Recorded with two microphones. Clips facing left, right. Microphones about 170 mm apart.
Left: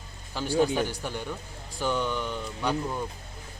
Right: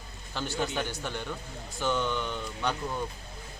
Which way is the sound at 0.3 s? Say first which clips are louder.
Left 7 dB; 10° left (ahead or behind).